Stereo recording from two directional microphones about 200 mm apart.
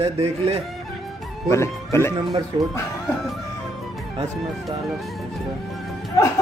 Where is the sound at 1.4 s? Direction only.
15° left (ahead or behind).